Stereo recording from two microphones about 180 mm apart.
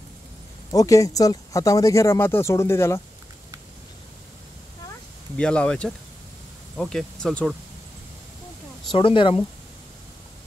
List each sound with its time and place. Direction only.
0.7 s speech: 20° left (ahead or behind)
5.4 s speech: 5° left (ahead or behind)
8.9 s speech: 30° left (ahead or behind)